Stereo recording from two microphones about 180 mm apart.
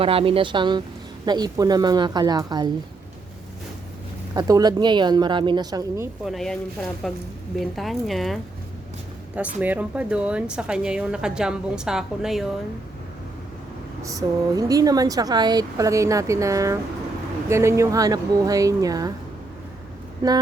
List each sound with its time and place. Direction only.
0.0 s speech: 30° right (ahead or behind)
4.4 s speech: 20° right (ahead or behind)
6.2 s speech: centre (ahead or behind)
7.6 s speech: centre (ahead or behind)
14.0 s speech: 20° right (ahead or behind)
20.2 s speech: 20° right (ahead or behind)